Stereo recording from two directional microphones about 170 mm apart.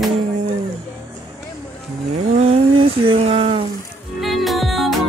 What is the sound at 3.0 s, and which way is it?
Speech, 35° right (ahead or behind).